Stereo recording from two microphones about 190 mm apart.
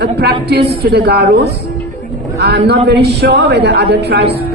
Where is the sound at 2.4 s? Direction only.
60° right (ahead or behind).